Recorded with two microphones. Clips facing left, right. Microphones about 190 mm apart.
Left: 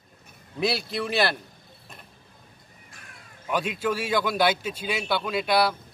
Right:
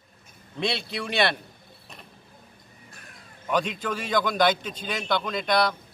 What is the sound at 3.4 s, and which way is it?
A man's voice, 5° left (ahead or behind).